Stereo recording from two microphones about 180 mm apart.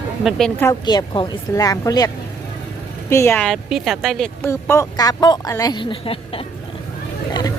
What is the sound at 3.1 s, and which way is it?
Speech, 15° left (ahead or behind).